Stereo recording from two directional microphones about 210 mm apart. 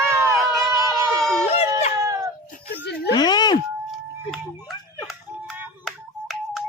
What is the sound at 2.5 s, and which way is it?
Whimper, 40° left (ahead or behind).